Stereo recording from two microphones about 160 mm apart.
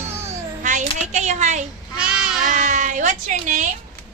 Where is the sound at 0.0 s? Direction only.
15° right (ahead or behind).